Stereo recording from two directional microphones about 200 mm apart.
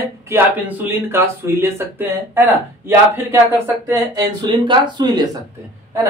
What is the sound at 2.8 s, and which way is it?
Speech, 10° right (ahead or behind).